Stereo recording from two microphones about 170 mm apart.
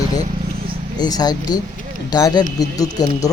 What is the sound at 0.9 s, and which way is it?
Speech, 25° left (ahead or behind).